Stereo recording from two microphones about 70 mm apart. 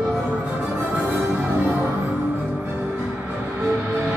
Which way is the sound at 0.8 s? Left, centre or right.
Right.